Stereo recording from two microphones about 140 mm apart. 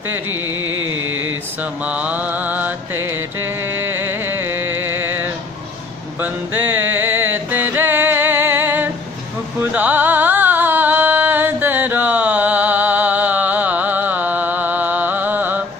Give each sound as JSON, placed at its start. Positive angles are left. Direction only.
{"t": 1.9, "sound": "mantra", "side_deg": -10}
{"t": 3.7, "sound": "music", "side_deg": -15}